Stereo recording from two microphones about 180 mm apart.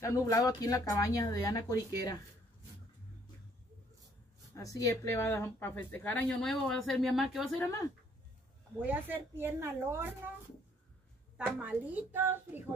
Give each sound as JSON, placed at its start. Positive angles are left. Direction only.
{"t": 0.0, "sound": "speech", "side_deg": 15}
{"t": 4.6, "sound": "speech", "side_deg": 20}
{"t": 8.8, "sound": "a woman's voice", "side_deg": -10}
{"t": 11.3, "sound": "a woman's voice", "side_deg": -5}